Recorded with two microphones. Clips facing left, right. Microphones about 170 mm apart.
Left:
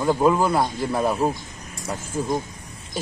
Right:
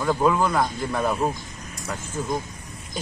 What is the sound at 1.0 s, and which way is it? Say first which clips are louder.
Speech: left 2 dB; 10° left (ahead or behind).